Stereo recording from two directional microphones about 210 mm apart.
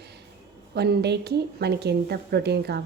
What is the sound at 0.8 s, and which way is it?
A woman's voice, 50° right (ahead or behind).